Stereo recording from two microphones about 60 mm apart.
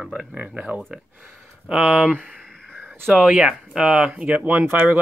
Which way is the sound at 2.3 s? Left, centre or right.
Centre.